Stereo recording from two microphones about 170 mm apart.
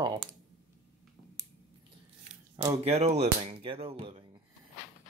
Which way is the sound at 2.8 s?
40° right (ahead or behind).